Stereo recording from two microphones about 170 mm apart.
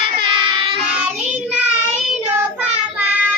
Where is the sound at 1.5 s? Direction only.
5° right (ahead or behind).